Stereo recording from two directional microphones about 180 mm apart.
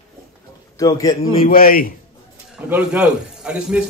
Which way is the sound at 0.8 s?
20° left (ahead or behind).